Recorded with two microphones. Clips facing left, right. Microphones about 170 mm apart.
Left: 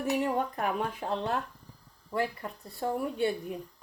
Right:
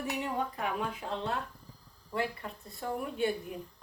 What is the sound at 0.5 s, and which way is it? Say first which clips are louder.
Speech: left 3 dB; 45° left (ahead or behind).